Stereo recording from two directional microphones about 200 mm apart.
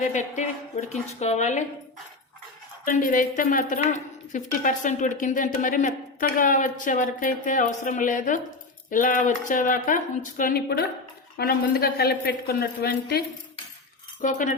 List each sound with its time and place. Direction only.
0.0 s speech: 35° left (ahead or behind)
2.8 s a woman's voice: 40° left (ahead or behind)
14.2 s speech: 40° left (ahead or behind)